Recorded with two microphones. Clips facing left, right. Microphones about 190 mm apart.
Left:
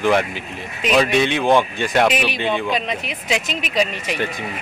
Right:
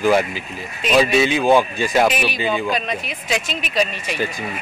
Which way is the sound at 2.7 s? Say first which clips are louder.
Even; 20° left (ahead or behind).